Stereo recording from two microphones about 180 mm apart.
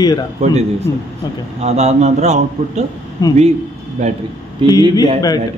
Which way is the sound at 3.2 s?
20° left (ahead or behind).